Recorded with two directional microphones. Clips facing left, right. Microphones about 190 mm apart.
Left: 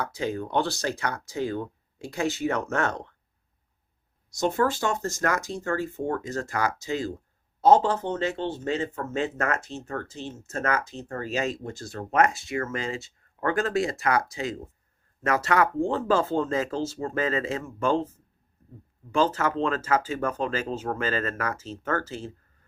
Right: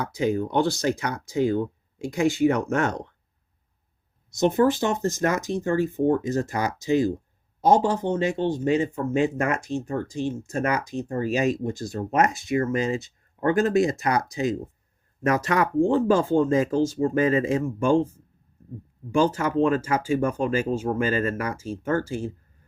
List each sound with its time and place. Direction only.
0.0 s speech: 15° right (ahead or behind)
4.4 s speech: 20° right (ahead or behind)
19.1 s speech: 15° right (ahead or behind)